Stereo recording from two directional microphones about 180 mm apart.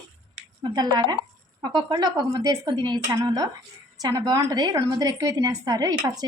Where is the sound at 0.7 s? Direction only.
25° right (ahead or behind).